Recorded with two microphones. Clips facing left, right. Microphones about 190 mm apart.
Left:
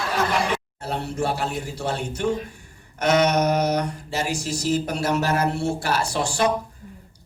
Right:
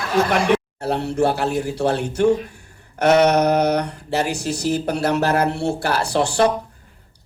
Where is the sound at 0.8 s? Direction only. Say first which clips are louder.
Right 7 dB; 65° right (ahead or behind).